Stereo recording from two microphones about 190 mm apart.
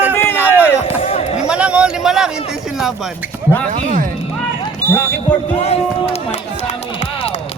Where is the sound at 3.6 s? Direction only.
40° right (ahead or behind).